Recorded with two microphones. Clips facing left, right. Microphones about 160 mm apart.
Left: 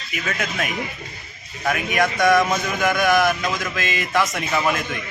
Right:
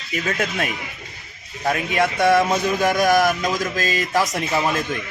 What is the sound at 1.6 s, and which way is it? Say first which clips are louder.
A man's voice: right 1 dB; 30° right (ahead or behind).